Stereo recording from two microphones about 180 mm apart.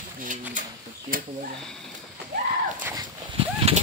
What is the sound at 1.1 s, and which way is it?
Speech, 50° right (ahead or behind).